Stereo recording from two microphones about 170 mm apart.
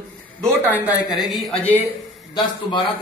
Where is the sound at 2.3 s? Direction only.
25° left (ahead or behind).